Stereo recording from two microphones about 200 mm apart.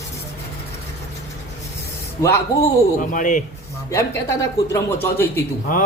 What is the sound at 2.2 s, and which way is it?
Speech, 15° left (ahead or behind).